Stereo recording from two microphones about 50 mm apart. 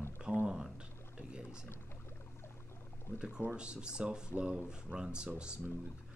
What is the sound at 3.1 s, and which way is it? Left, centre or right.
Speech, left.